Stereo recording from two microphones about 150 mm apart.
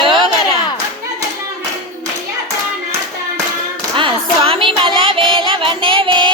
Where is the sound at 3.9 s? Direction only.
35° right (ahead or behind).